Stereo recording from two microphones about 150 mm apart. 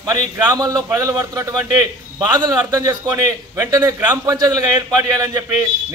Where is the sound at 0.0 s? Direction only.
25° right (ahead or behind).